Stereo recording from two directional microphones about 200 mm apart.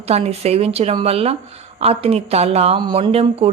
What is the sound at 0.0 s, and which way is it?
A woman's voice, 30° right (ahead or behind).